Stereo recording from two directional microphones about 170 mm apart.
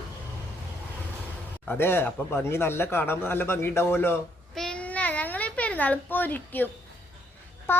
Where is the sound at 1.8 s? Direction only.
15° left (ahead or behind).